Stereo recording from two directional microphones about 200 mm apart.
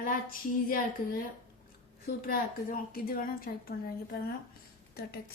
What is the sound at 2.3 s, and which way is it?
A woman's voice, 45° left (ahead or behind).